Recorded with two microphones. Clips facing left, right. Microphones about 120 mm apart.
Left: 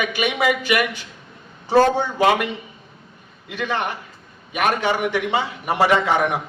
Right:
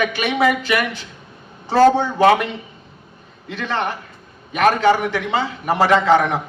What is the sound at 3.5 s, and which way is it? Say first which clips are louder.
A man's voice: right 1 dB; 10° left (ahead or behind).